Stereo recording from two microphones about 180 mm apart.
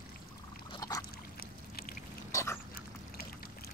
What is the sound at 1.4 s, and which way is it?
Boat, 55° left (ahead or behind).